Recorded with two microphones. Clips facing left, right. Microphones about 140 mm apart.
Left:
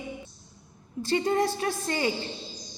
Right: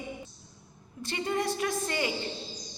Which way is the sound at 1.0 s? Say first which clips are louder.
Left 6 dB; 35° left (ahead or behind).